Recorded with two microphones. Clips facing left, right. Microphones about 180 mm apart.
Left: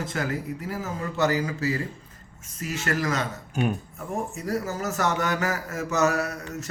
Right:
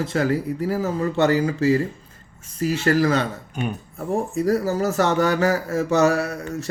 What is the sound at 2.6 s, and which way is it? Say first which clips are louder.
Speech: right 9 dB; 30° right (ahead or behind).